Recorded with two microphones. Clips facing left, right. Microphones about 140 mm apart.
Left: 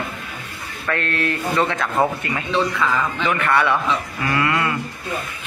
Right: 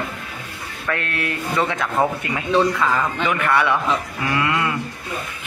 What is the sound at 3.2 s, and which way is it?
A man's voice, 10° right (ahead or behind).